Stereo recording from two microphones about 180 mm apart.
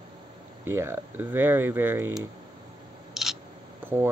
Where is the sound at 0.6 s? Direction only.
15° right (ahead or behind).